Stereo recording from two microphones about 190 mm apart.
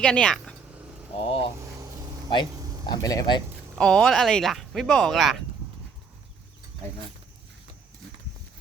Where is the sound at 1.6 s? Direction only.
15° right (ahead or behind).